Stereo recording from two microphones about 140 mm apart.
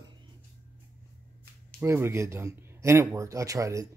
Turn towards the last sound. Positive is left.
turn(degrees=-25)  # may be behind; listen again after turning